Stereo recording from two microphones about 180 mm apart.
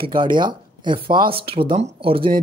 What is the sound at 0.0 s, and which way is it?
Speech, 25° right (ahead or behind).